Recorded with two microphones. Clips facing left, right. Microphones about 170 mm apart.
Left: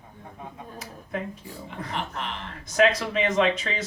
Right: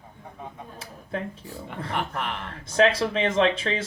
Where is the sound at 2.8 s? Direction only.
30° right (ahead or behind).